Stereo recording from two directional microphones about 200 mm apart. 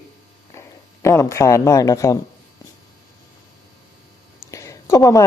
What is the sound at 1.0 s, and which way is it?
Speech, 15° left (ahead or behind).